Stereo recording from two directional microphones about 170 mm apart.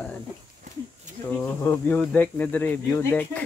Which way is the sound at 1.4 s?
15° left (ahead or behind).